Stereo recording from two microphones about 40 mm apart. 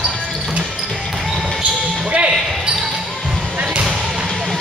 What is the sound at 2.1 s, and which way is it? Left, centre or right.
Basketball bounce, right.